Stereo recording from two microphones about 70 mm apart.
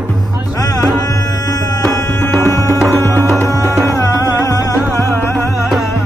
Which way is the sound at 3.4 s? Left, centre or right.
Left.